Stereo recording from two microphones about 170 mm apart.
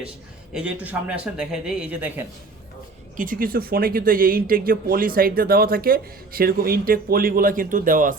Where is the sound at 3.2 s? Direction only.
55° right (ahead or behind).